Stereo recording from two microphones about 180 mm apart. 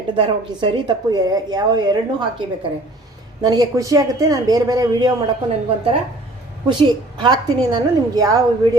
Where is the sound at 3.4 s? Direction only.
20° right (ahead or behind).